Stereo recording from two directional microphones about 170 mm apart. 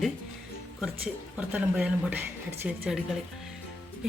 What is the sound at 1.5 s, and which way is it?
A woman's voice, 5° right (ahead or behind).